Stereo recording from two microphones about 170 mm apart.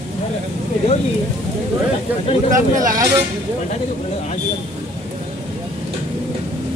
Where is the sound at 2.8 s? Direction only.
20° right (ahead or behind).